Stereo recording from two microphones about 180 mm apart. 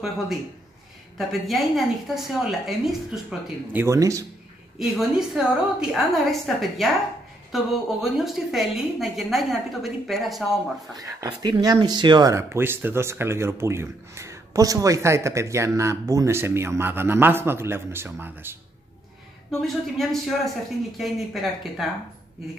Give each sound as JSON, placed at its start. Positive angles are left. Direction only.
{"t": 1.1, "sound": "a woman's voice", "side_deg": 0}
{"t": 3.8, "sound": "speech", "side_deg": -15}
{"t": 4.7, "sound": "a woman's voice", "side_deg": 0}
{"t": 11.0, "sound": "speech", "side_deg": -20}
{"t": 19.6, "sound": "a woman's voice", "side_deg": 0}